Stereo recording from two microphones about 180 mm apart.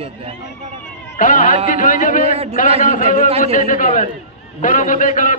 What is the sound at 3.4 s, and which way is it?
A man's voice, 50° left (ahead or behind).